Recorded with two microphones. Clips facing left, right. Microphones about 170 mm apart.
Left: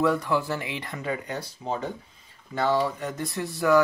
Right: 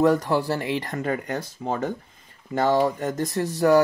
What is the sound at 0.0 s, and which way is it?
Speech, 40° right (ahead or behind).